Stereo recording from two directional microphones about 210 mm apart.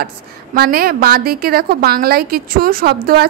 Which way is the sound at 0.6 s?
45° right (ahead or behind).